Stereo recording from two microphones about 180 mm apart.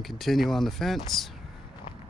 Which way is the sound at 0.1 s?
Centre (ahead or behind).